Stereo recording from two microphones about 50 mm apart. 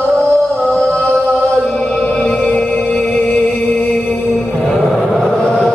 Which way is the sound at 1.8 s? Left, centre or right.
Centre.